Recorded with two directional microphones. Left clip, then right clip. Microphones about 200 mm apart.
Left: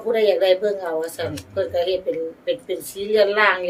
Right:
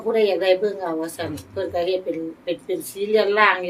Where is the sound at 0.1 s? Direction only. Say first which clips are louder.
Left 1 dB; 10° left (ahead or behind).